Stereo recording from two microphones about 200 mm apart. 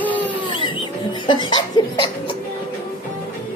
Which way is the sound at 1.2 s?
25° left (ahead or behind).